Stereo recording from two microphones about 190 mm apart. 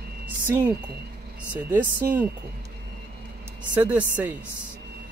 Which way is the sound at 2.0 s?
50° right (ahead or behind).